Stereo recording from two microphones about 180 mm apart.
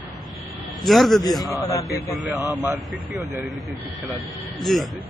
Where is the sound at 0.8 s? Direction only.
Centre (ahead or behind).